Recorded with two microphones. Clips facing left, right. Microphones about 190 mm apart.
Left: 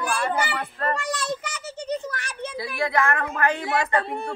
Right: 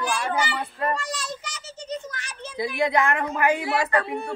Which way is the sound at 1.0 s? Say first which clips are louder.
Left 5 dB; 60° left (ahead or behind).